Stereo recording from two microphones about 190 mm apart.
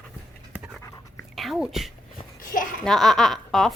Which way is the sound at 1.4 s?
Centre (ahead or behind).